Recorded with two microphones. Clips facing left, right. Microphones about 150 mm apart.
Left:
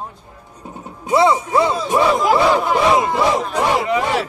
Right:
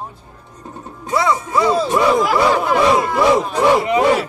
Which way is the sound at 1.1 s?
25° left (ahead or behind).